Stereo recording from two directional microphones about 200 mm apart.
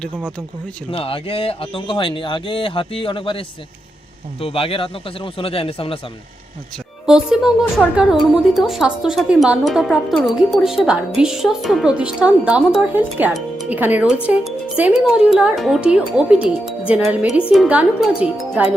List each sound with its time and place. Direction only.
0.9 s speech: 25° left (ahead or behind)
7.0 s a woman's voice: 5° right (ahead or behind)